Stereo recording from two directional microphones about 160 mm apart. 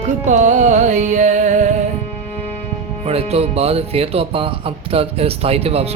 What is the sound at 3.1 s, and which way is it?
Speech, 40° right (ahead or behind).